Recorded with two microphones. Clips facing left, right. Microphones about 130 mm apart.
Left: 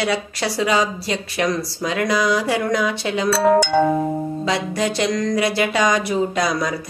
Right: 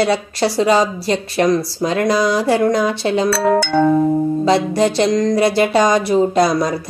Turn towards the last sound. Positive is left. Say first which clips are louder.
# right 6 dB
turn(degrees=-35)  # may be behind; listen again after turning